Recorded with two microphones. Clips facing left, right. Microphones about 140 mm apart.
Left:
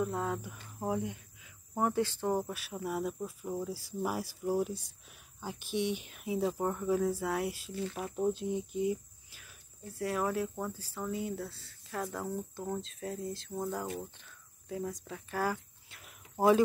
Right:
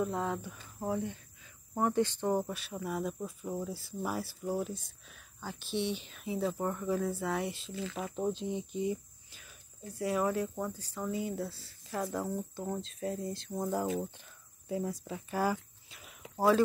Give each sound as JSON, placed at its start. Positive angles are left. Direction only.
{"t": 0.0, "sound": "speech", "side_deg": 0}
{"t": 16.3, "sound": "speech", "side_deg": 20}